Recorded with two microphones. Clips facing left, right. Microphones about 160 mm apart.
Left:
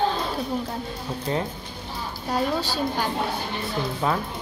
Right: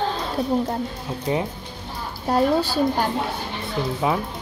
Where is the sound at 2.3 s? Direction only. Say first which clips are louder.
Right 6 dB; 50° right (ahead or behind).